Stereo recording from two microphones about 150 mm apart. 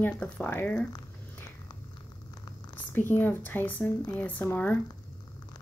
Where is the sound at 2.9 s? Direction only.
15° left (ahead or behind).